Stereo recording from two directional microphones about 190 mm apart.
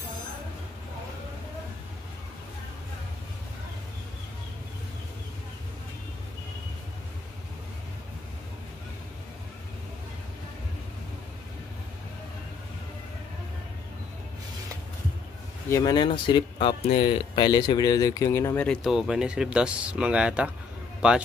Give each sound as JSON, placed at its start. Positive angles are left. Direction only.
{"t": 15.7, "sound": "speech", "side_deg": 20}